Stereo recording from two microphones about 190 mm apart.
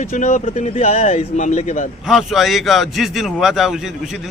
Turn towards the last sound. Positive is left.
turn(degrees=0)  # may be behind; listen again after turning